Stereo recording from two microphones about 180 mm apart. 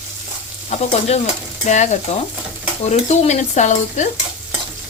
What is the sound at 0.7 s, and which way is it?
Speech, 35° left (ahead or behind).